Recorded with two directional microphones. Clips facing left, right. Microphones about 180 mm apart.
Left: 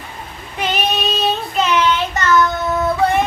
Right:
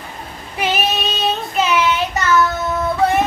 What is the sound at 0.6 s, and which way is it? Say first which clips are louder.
Child singing: even; 5° right (ahead or behind).